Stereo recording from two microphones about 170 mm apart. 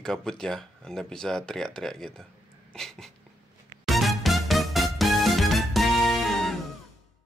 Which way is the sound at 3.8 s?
Centre (ahead or behind).